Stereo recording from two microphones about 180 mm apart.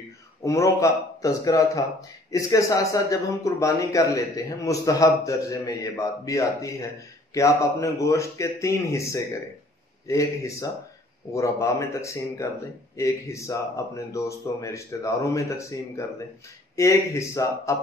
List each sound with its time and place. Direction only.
0.4 s speech: 15° left (ahead or behind)